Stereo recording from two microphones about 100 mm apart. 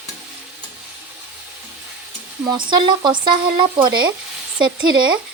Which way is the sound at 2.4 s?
50° right (ahead or behind).